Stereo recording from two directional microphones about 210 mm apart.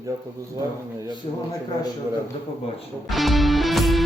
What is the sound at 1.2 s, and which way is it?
Speech, 25° left (ahead or behind).